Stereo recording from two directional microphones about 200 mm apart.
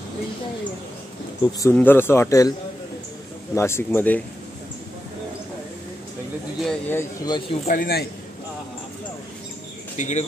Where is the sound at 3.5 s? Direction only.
15° left (ahead or behind).